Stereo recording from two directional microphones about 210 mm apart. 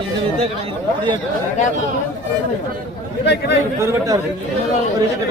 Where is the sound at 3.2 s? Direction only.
55° left (ahead or behind).